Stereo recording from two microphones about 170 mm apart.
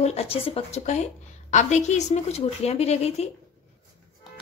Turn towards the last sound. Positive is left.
turn(degrees=40)  # may be behind; listen again after turning